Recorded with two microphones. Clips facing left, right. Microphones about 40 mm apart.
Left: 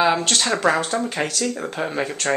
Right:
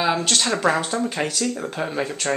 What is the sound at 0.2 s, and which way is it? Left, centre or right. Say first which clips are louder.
A woman's voice: left 1 dB; centre.